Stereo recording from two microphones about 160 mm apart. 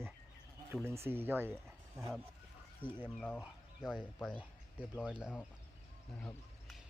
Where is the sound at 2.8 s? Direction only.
35° right (ahead or behind).